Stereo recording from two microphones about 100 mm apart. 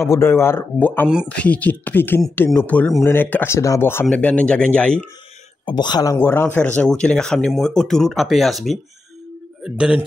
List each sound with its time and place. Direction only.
0.0 s speech: 25° left (ahead or behind)
1.0 s speech: 10° right (ahead or behind)
1.3 s speech: 15° left (ahead or behind)
4.1 s speech: 10° left (ahead or behind)
5.7 s speech: 45° left (ahead or behind)
6.1 s a man's voice: 20° left (ahead or behind); by 9.9 s 5° right (ahead or behind)